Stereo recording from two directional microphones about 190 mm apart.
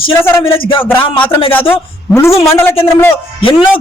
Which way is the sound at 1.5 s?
10° left (ahead or behind).